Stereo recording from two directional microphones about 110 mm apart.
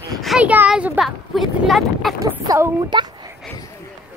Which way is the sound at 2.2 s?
30° right (ahead or behind).